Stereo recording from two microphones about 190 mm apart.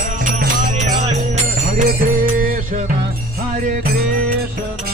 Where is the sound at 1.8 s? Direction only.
40° right (ahead or behind).